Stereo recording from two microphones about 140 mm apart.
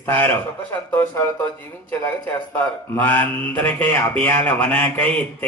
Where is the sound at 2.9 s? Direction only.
15° left (ahead or behind).